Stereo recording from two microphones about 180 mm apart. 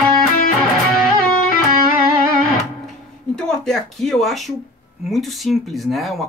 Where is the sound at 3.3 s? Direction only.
5° left (ahead or behind).